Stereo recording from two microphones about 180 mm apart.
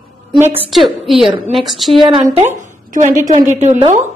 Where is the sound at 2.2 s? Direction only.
40° right (ahead or behind).